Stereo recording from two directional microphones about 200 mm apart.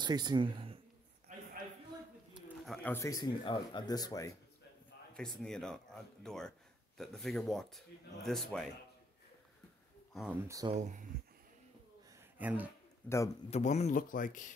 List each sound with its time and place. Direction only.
0.0 s speech: 20° right (ahead or behind)
2.3 s speech: centre (ahead or behind); by 4.4 s 15° left (ahead or behind)
5.1 s speech: centre (ahead or behind)
10.1 s speech: 5° right (ahead or behind)
10.7 s speech: 40° right (ahead or behind)
12.2 s a sound: 10° right (ahead or behind)
13.0 s speech: 10° left (ahead or behind)
13.5 s speech: 35° left (ahead or behind)